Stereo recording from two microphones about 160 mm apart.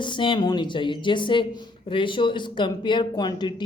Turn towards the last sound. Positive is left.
turn(degrees=25)  # may be behind; listen again after turning